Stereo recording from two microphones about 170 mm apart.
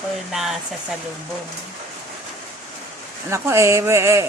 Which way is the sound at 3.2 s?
15° right (ahead or behind).